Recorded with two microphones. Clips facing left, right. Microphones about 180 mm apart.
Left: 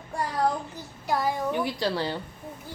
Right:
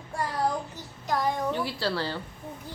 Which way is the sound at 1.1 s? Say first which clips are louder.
Left 1 dB; 5° left (ahead or behind).